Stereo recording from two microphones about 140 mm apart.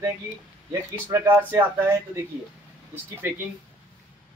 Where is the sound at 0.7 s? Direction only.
20° right (ahead or behind).